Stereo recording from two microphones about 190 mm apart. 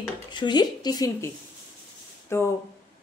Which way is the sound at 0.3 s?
25° left (ahead or behind).